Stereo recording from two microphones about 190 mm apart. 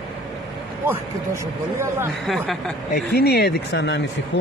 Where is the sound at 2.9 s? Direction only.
55° left (ahead or behind).